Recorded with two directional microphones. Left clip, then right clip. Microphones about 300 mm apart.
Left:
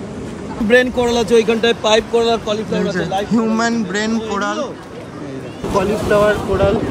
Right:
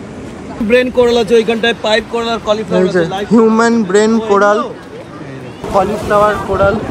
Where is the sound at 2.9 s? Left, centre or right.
Centre.